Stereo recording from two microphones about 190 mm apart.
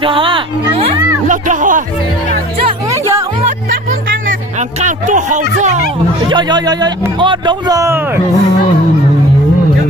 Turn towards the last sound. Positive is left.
turn(degrees=-15)  # may be behind; listen again after turning